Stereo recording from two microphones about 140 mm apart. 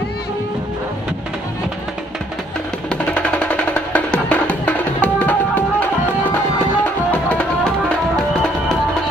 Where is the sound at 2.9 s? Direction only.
10° left (ahead or behind).